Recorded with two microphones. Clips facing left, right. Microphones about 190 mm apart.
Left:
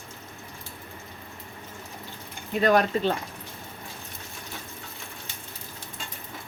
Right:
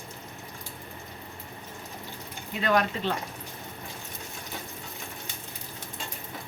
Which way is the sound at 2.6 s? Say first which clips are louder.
Left 5 dB; 40° left (ahead or behind).